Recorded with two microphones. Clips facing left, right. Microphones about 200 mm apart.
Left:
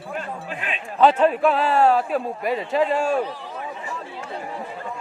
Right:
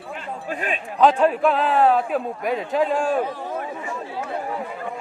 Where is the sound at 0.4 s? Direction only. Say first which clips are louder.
Right 4 dB; 45° right (ahead or behind).